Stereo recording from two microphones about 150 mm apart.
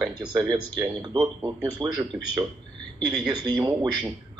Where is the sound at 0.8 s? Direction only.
25° right (ahead or behind).